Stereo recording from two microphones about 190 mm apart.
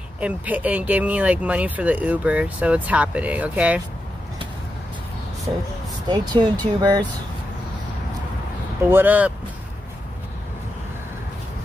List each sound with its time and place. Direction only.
0.2 s speech: 10° right (ahead or behind)
6.0 s speech: 20° right (ahead or behind)
8.8 s speech: 10° right (ahead or behind)